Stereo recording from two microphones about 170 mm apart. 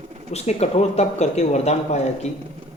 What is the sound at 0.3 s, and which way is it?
A man's voice, 40° left (ahead or behind).